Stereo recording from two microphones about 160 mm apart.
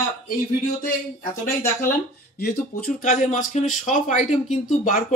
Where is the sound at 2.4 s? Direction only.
60° left (ahead or behind).